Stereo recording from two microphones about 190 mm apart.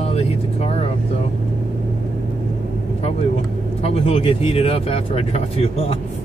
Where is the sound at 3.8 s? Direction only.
30° left (ahead or behind).